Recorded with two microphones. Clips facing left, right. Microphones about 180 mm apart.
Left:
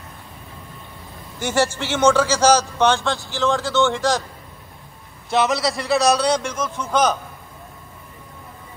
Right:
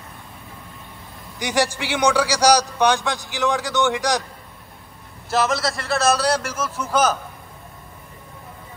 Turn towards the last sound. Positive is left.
turn(degrees=-5)  # may be behind; listen again after turning